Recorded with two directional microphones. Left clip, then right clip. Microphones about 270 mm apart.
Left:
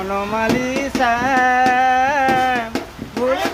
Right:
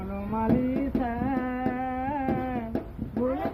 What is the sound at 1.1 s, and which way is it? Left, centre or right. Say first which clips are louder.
Music: left 16 dB; centre.